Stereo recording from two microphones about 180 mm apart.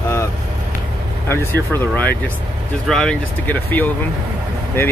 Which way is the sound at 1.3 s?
10° left (ahead or behind).